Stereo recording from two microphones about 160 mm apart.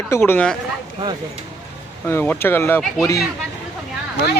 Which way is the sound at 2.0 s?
10° left (ahead or behind).